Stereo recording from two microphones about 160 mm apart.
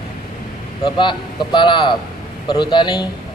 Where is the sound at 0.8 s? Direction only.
30° left (ahead or behind).